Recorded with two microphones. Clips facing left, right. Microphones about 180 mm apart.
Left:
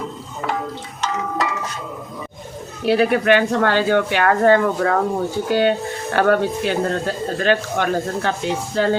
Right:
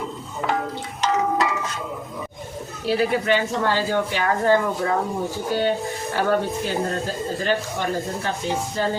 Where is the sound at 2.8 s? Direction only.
65° left (ahead or behind).